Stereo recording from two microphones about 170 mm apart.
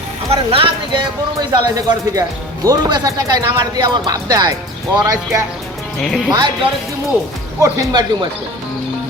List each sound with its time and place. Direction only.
0.3 s speech: 35° right (ahead or behind)
1.4 s speech: 20° right (ahead or behind)
6.0 s speech: centre (ahead or behind)
6.3 s speech: 25° right (ahead or behind)